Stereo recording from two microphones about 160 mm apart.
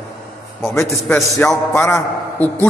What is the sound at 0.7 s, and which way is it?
A man's voice, 15° left (ahead or behind).